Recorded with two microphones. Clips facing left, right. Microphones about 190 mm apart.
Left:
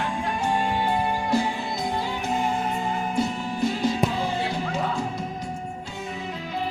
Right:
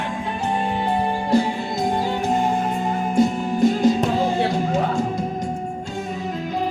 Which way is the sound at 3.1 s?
45° right (ahead or behind).